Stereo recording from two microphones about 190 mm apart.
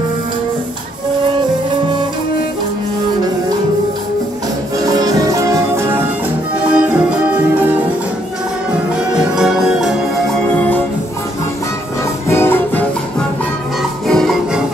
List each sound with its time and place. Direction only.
4.8 s music: 20° right (ahead or behind)
9.1 s music: 5° right (ahead or behind)
12.3 s music: 10° left (ahead or behind)
14.0 s music: centre (ahead or behind)